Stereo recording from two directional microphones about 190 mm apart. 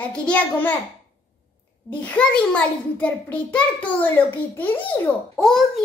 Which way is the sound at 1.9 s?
5° left (ahead or behind).